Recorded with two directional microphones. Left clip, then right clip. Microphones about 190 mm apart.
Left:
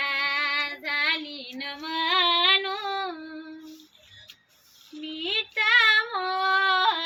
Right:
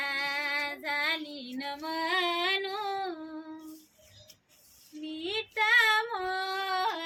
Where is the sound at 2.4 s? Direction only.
45° right (ahead or behind).